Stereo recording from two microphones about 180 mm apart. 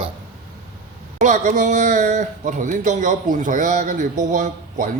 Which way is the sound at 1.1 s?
45° right (ahead or behind).